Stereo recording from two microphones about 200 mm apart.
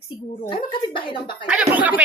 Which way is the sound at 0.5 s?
25° left (ahead or behind).